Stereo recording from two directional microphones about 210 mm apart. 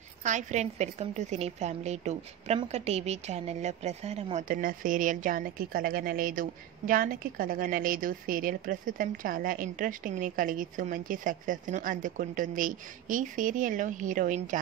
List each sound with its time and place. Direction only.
0.2 s a woman's voice: 35° right (ahead or behind)